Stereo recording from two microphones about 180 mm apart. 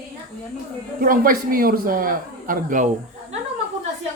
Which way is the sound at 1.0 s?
50° right (ahead or behind).